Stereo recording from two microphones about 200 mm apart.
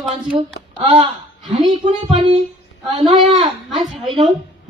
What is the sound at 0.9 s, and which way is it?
A man's voice, 25° right (ahead or behind).